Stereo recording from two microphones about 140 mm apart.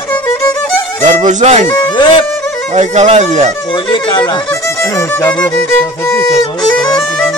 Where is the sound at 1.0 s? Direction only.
60° right (ahead or behind).